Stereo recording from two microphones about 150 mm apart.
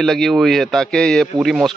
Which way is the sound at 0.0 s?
5° left (ahead or behind).